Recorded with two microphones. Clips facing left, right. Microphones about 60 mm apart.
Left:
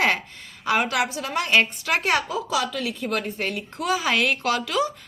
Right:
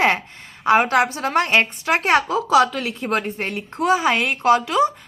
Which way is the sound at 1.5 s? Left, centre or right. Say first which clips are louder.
Right 2 dB; right.